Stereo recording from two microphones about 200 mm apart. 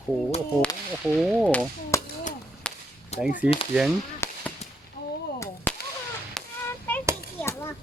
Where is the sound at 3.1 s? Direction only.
30° left (ahead or behind).